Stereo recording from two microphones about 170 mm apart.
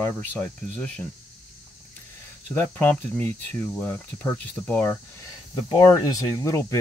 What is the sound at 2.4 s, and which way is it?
Speech, 10° left (ahead or behind).